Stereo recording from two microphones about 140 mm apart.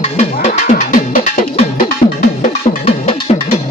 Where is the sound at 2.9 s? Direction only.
45° left (ahead or behind).